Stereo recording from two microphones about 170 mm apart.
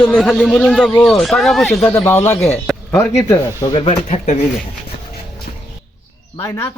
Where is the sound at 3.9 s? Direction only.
40° left (ahead or behind).